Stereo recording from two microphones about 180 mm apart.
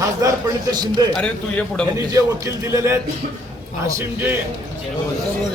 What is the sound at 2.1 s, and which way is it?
A man's voice, 15° right (ahead or behind).